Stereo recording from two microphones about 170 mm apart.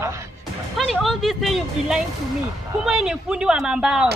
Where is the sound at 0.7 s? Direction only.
Centre (ahead or behind).